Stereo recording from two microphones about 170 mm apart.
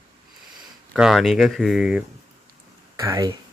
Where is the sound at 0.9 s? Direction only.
Centre (ahead or behind).